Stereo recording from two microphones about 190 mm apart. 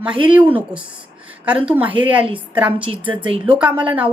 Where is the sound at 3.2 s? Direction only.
30° right (ahead or behind).